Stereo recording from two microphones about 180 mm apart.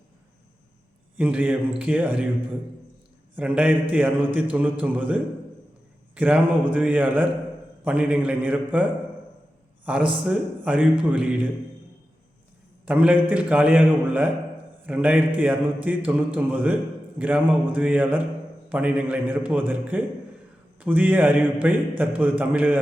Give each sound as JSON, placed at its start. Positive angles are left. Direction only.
{"t": 1.1, "sound": "a man's voice", "side_deg": -10}
{"t": 3.3, "sound": "a man's voice", "side_deg": -10}
{"t": 12.8, "sound": "a man's voice", "side_deg": -10}